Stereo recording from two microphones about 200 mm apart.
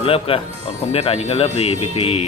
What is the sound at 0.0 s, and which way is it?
Speech, 30° left (ahead or behind).